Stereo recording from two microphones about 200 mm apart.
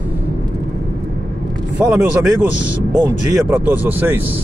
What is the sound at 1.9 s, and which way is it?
Speech, 5° right (ahead or behind).